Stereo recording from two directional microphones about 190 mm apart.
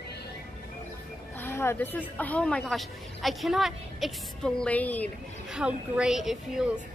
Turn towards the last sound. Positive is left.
turn(degrees=-5)  # may be behind; listen again after turning